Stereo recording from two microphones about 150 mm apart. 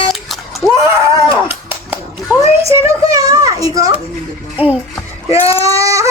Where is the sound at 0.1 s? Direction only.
Centre (ahead or behind).